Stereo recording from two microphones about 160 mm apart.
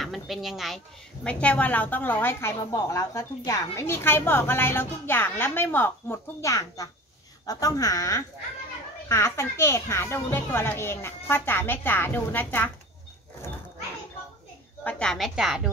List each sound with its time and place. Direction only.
0.0 s a child's voice: centre (ahead or behind)
14.8 s a woman's voice: 5° left (ahead or behind)